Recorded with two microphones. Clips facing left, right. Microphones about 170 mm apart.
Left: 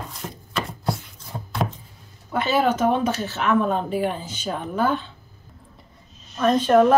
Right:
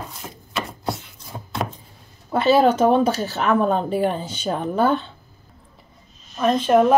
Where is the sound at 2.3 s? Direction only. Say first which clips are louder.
Right 5 dB; 30° right (ahead or behind).